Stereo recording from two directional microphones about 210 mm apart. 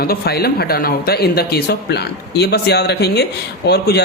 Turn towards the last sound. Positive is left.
turn(degrees=50)  # may be behind; listen again after turning